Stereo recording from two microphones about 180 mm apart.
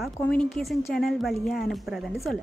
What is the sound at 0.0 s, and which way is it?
Speech, centre (ahead or behind).